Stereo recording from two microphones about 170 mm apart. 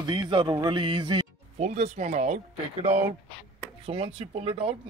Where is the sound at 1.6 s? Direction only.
45° right (ahead or behind).